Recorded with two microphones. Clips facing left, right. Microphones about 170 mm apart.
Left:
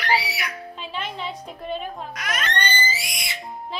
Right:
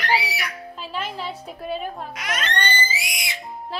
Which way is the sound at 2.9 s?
10° right (ahead or behind).